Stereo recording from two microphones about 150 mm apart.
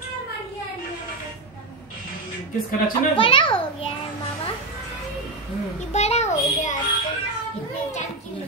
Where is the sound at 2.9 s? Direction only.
35° left (ahead or behind).